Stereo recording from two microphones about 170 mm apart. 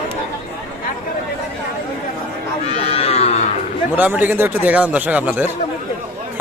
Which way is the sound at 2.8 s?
35° left (ahead or behind).